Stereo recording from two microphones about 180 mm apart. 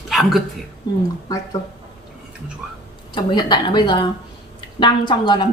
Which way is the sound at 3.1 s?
25° left (ahead or behind).